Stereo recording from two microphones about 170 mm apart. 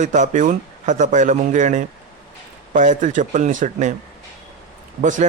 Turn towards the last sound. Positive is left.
turn(degrees=-45)  # may be behind; listen again after turning